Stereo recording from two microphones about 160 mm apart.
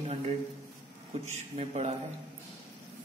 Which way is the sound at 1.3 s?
40° right (ahead or behind).